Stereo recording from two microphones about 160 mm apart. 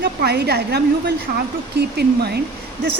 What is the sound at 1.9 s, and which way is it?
Speech, 90° right.